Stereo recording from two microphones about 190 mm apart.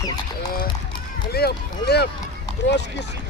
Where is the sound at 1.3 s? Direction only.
55° left (ahead or behind).